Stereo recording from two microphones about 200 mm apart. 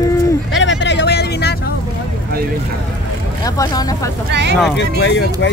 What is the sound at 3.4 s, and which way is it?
Speech, 20° left (ahead or behind).